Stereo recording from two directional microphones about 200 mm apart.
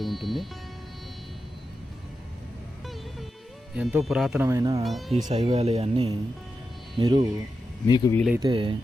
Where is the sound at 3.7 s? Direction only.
5° right (ahead or behind).